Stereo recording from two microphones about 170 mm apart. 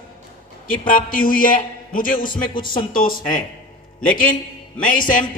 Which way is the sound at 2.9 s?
55° left (ahead or behind).